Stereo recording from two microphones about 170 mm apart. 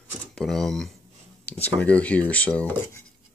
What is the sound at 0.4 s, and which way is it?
Speech, centre (ahead or behind).